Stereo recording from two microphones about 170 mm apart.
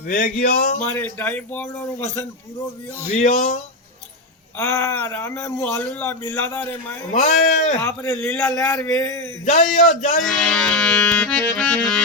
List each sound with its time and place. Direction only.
0.1 s a sound: 55° left (ahead or behind)
0.8 s speech: 10° left (ahead or behind)
3.2 s speech: 45° left (ahead or behind)
4.5 s speech: 15° left (ahead or behind)
7.1 s speech: 45° left (ahead or behind)
7.8 s speech: 10° left (ahead or behind)
9.5 s speech: 45° left (ahead or behind)
10.2 s accordion: 5° left (ahead or behind)